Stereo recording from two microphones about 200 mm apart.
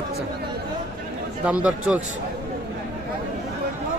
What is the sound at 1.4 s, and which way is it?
Speech, 5° right (ahead or behind).